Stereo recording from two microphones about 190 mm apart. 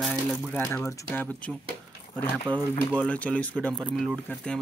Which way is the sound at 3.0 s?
5° left (ahead or behind).